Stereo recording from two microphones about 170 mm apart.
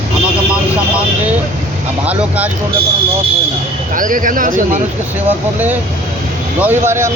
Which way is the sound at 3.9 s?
50° right (ahead or behind).